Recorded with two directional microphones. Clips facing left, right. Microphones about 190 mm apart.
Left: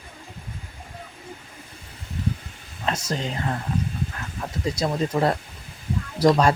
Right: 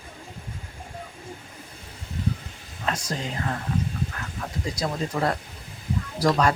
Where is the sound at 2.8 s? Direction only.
25° left (ahead or behind).